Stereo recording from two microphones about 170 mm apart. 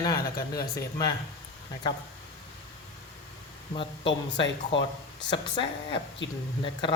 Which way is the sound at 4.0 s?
90° left.